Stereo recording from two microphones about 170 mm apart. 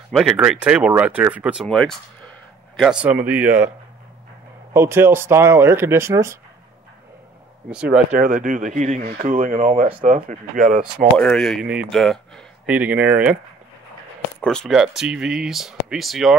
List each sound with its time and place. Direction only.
0.1 s speech: centre (ahead or behind)
4.7 s speech: 15° right (ahead or behind)
7.7 s speech: 5° right (ahead or behind)
8.2 s speech: 50° right (ahead or behind)
11.1 s speech: 5° left (ahead or behind)
12.6 s speech: 10° right (ahead or behind)
14.4 s speech: 5° left (ahead or behind)